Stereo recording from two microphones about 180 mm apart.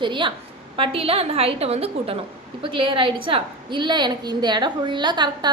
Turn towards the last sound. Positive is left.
turn(degrees=-25)  # may be behind; listen again after turning